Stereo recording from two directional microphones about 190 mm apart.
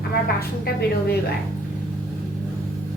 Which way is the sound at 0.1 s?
55° left (ahead or behind).